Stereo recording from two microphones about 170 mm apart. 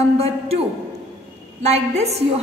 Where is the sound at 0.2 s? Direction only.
35° right (ahead or behind).